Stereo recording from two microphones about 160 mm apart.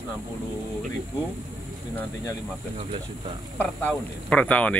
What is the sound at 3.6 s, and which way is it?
Speech, 10° left (ahead or behind).